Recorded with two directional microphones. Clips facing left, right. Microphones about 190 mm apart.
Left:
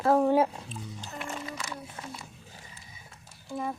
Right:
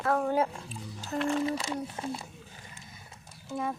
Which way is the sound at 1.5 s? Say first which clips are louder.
Right 6 dB; 30° right (ahead or behind).